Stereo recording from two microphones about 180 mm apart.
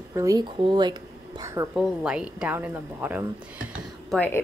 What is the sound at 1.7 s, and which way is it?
Speech, 5° right (ahead or behind).